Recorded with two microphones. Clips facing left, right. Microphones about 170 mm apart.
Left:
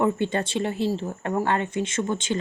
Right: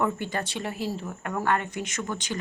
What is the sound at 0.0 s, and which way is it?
Speech, 25° left (ahead or behind).